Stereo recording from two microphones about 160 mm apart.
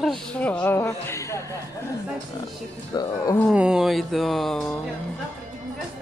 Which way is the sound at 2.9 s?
25° left (ahead or behind).